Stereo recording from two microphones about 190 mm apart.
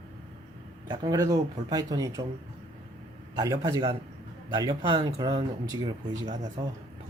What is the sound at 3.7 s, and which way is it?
A man's voice, 20° right (ahead or behind).